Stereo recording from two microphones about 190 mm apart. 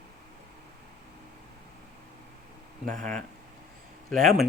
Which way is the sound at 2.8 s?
40° right (ahead or behind).